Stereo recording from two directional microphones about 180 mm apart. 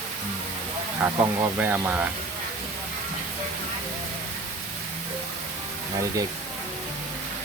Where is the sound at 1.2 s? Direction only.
10° right (ahead or behind).